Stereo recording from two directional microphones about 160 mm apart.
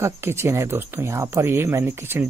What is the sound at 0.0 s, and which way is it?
Speech, 15° right (ahead or behind).